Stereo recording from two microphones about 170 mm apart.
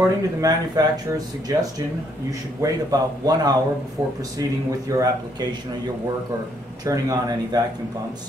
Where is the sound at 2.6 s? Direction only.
20° right (ahead or behind).